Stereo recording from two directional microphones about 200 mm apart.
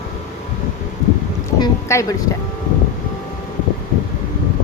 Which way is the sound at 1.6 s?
15° left (ahead or behind).